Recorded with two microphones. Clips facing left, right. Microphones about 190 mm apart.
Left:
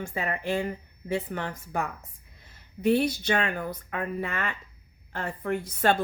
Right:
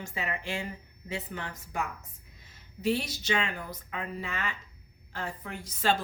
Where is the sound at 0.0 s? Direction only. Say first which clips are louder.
Left 5 dB; 50° left (ahead or behind).